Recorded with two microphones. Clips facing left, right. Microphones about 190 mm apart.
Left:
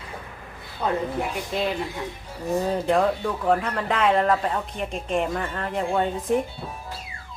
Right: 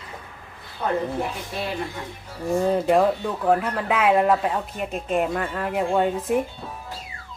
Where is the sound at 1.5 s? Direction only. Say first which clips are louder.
Left 6 dB; 20° left (ahead or behind).